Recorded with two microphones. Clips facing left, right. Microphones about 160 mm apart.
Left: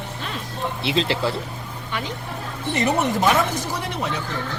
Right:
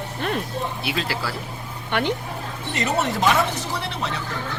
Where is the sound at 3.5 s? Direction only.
10° left (ahead or behind).